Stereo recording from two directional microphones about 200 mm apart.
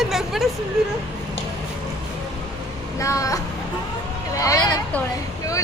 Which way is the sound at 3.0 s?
15° left (ahead or behind).